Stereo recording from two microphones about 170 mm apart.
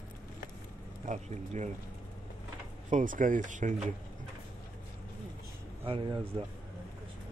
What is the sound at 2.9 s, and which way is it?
Speech, 50° right (ahead or behind).